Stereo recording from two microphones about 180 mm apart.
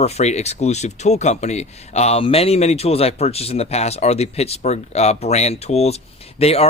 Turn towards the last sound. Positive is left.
turn(degrees=35)  # may be behind; listen again after turning